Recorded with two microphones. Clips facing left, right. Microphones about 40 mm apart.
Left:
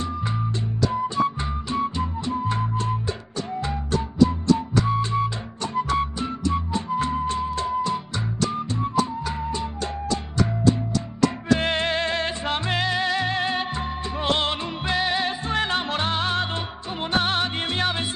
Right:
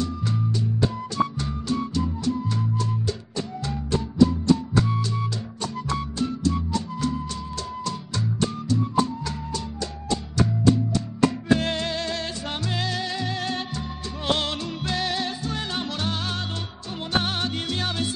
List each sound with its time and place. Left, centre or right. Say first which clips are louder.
0.9 s music: left 3 dB; left
4.3 s music: even; left
11.6 s music: left 4 dB; left